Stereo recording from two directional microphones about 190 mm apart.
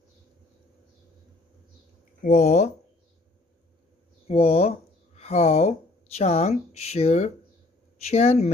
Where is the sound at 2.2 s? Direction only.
45° left (ahead or behind).